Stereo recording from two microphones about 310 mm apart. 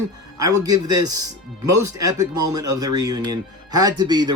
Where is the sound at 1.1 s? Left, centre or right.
Right.